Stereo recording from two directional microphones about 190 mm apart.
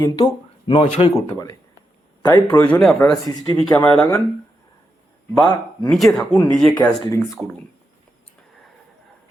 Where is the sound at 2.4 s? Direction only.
10° left (ahead or behind).